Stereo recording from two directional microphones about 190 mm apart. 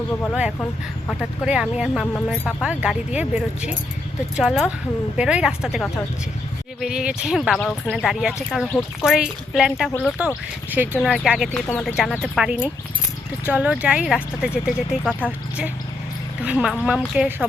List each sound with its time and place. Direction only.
0.6 s speech: 5° left (ahead or behind)
1.5 s speech: 5° right (ahead or behind)